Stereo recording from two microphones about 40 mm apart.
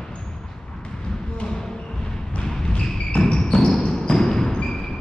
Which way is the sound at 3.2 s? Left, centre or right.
Centre.